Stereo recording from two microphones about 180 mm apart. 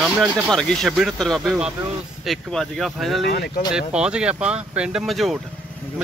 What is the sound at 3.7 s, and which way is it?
Speech, 5° right (ahead or behind).